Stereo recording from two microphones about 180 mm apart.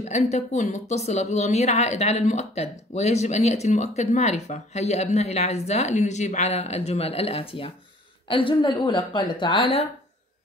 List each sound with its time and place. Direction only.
0.1 s a woman's voice: 40° left (ahead or behind)